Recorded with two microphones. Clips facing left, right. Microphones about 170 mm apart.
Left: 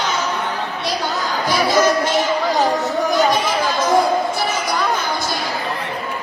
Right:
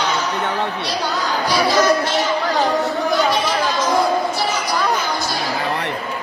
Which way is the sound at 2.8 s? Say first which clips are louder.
Left 1 dB; 45° left (ahead or behind).